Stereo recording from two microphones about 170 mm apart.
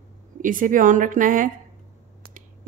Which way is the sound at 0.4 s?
50° right (ahead or behind).